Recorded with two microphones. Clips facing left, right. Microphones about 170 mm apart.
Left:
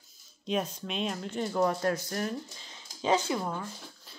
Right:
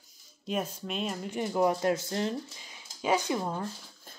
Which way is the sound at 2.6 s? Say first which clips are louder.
Left 1 dB; 10° right (ahead or behind).